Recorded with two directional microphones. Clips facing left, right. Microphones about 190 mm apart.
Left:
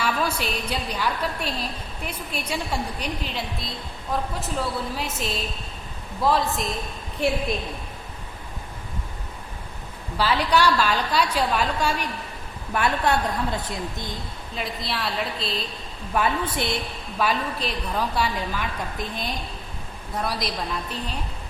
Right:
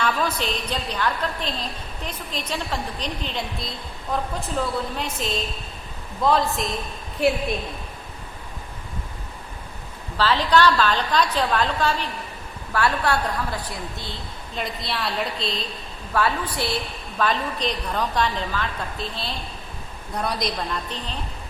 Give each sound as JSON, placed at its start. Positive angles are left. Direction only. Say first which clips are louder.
{"t": 0.0, "sound": "a woman's voice", "louder": "right 1 dB", "side_deg": 10}
{"t": 10.2, "sound": "a woman's voice", "louder": "right 2 dB", "side_deg": 10}
{"t": 14.5, "sound": "a woman's voice", "louder": "right 1 dB", "side_deg": 0}
{"t": 16.1, "sound": "a woman's voice", "louder": "even", "side_deg": 20}
{"t": 17.2, "sound": "a woman's voice", "louder": "right 1 dB", "side_deg": 10}
{"t": 20.1, "sound": "a woman's voice", "louder": "right 2 dB", "side_deg": 0}